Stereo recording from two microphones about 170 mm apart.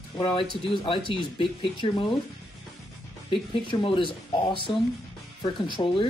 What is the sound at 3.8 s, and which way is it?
Speech, 30° left (ahead or behind).